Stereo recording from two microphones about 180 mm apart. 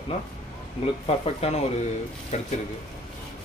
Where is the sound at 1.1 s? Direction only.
35° left (ahead or behind).